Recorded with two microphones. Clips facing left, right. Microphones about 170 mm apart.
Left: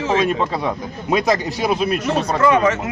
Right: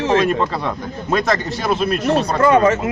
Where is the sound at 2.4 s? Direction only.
35° right (ahead or behind).